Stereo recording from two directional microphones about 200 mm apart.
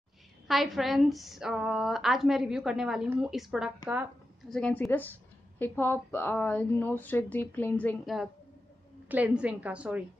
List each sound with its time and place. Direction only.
0.5 s a woman's voice: centre (ahead or behind)
4.5 s a woman's voice: 5° left (ahead or behind)